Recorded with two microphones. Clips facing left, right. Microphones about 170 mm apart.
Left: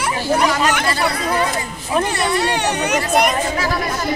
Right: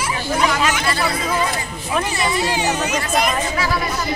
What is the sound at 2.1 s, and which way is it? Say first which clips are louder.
Speech: left 2 dB; 65° left (ahead or behind).